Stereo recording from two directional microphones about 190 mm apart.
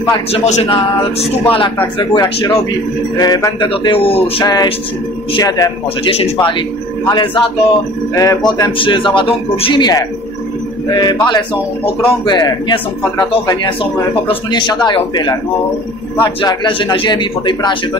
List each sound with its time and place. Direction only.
0.3 s a man's voice: 35° left (ahead or behind)